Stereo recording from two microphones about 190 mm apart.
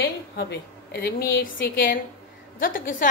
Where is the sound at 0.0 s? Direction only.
55° left (ahead or behind).